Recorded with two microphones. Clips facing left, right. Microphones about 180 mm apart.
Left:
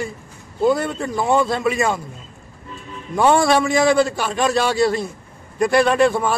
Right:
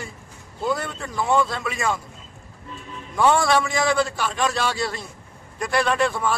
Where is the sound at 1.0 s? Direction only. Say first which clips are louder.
Left 5 dB; 30° left (ahead or behind).